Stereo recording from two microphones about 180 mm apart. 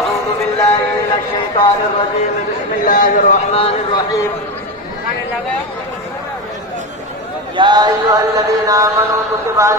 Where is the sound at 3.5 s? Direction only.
30° left (ahead or behind).